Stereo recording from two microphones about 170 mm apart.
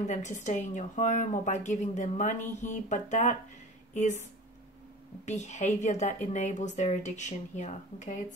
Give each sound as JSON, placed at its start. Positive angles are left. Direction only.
{"t": 0.0, "sound": "a woman's voice", "side_deg": 45}
{"t": 5.2, "sound": "a woman's voice", "side_deg": 40}